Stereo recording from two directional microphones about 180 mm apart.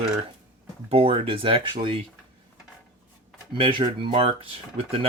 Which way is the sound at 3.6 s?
30° right (ahead or behind).